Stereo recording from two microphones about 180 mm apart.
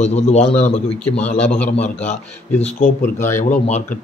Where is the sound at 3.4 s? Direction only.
45° left (ahead or behind).